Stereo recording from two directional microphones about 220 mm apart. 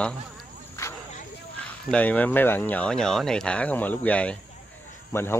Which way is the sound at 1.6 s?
5° left (ahead or behind).